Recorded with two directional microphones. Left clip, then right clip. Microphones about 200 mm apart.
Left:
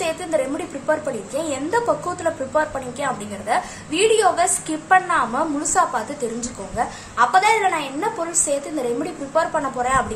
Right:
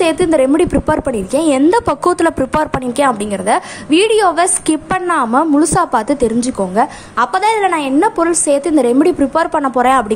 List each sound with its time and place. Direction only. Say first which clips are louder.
0.0 s a woman's voice: right 10 dB; 50° right (ahead or behind)